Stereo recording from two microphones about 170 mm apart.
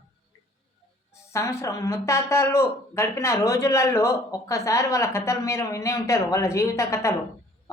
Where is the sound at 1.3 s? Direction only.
15° left (ahead or behind).